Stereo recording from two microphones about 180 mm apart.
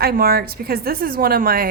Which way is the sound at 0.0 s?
55° right (ahead or behind).